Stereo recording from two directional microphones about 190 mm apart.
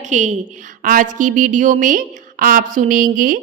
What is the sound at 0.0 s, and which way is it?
A woman's voice, 40° right (ahead or behind).